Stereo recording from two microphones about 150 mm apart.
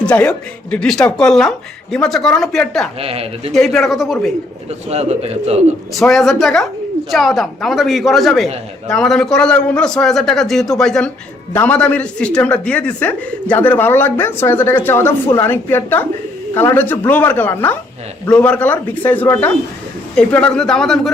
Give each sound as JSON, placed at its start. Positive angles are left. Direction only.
{"t": 0.0, "sound": "speech", "side_deg": 5}
{"t": 3.0, "sound": "speech", "side_deg": -40}
{"t": 3.5, "sound": "speech", "side_deg": 0}
{"t": 4.9, "sound": "speech", "side_deg": -45}
{"t": 5.9, "sound": "speech", "side_deg": 0}